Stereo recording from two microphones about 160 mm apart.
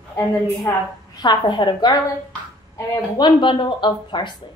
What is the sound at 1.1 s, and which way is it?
Speech, 25° left (ahead or behind).